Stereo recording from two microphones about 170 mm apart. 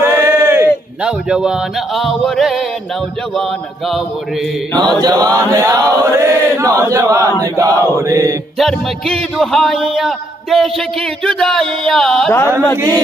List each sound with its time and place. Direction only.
0.0 s speech: 15° right (ahead or behind); by 2.6 s centre (ahead or behind)
4.7 s chant: 25° right (ahead or behind)
8.5 s a man's voice: centre (ahead or behind)